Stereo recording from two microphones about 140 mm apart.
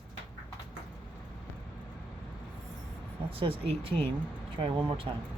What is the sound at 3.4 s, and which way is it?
Speech, 40° right (ahead or behind).